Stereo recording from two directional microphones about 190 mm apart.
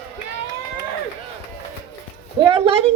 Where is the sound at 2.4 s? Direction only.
25° right (ahead or behind).